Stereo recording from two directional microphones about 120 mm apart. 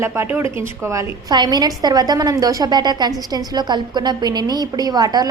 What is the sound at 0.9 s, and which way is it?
A woman's voice, 35° right (ahead or behind).